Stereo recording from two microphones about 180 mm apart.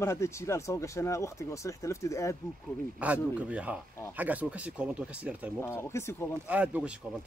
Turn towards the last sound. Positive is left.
turn(degrees=-5)  # may be behind; listen again after turning